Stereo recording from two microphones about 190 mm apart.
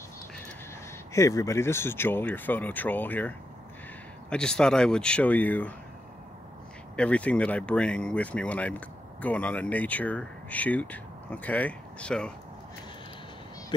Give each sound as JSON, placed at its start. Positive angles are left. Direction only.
{"t": 1.1, "sound": "speech", "side_deg": 15}
{"t": 7.0, "sound": "speech", "side_deg": 5}